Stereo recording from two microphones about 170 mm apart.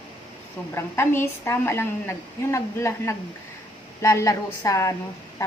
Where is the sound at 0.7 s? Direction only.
15° left (ahead or behind).